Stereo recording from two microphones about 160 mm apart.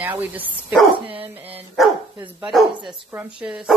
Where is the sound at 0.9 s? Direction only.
35° right (ahead or behind).